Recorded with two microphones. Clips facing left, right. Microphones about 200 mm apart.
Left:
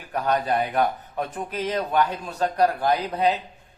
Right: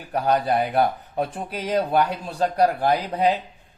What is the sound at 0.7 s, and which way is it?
Speech, 35° right (ahead or behind).